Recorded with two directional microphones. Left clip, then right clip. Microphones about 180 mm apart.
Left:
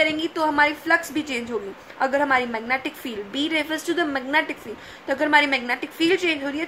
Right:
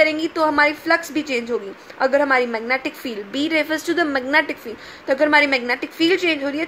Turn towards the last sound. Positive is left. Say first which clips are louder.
# right 3 dB
turn(degrees=-25)  # may be behind; listen again after turning